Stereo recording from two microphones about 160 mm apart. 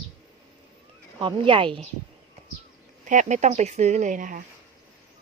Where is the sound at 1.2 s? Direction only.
30° right (ahead or behind).